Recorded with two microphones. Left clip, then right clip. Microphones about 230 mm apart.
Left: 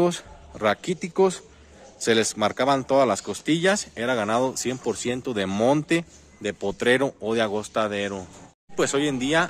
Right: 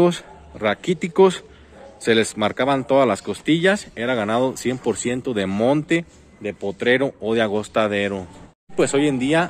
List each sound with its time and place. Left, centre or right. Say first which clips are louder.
0.6 s speech: right 2 dB; centre
6.4 s speech: right 1 dB; centre
6.9 s speech: right 3 dB; centre